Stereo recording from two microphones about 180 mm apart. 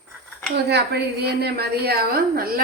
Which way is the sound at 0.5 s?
65° right (ahead or behind).